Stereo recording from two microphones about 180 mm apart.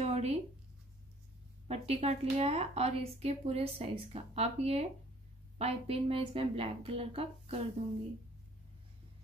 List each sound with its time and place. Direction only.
0.0 s writing: 35° right (ahead or behind)
1.7 s speech: 35° right (ahead or behind)